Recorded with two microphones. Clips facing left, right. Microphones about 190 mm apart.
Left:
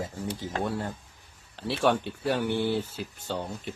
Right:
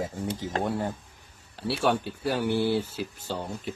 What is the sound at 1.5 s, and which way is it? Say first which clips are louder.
Speech: even; centre (ahead or behind).